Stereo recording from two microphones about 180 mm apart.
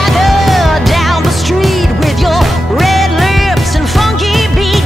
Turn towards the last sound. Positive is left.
turn(degrees=0)  # may be behind; listen again after turning